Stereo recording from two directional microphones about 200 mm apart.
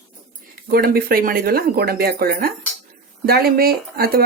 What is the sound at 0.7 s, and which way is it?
Speech, 50° right (ahead or behind).